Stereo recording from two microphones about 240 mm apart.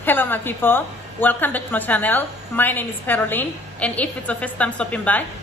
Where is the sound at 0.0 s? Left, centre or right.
Centre.